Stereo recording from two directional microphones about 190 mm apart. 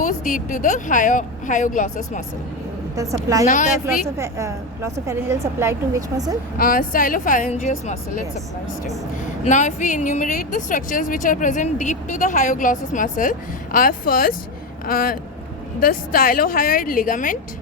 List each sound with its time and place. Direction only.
0.0 s speech: 40° left (ahead or behind)
2.9 s a woman's voice: 15° right (ahead or behind)
3.4 s speech: 40° left (ahead or behind)
4.2 s a woman's voice: 15° right (ahead or behind)
6.6 s speech: 50° left (ahead or behind)
9.4 s speech: 40° left (ahead or behind)